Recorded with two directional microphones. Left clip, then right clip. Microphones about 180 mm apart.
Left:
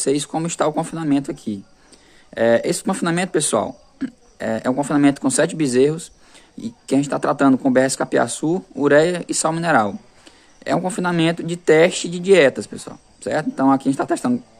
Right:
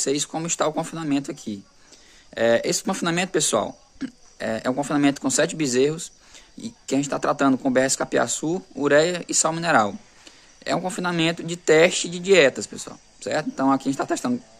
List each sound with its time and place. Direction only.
0.0 s speech: centre (ahead or behind)